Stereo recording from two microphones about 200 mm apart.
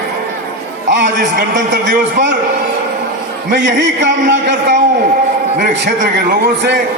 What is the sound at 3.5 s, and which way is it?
A man's voice, 60° right (ahead or behind).